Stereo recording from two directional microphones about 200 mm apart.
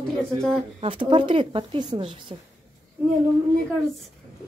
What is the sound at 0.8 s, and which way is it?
A woman's voice, 25° right (ahead or behind).